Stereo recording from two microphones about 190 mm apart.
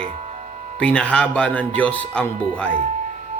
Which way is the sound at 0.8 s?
5° left (ahead or behind).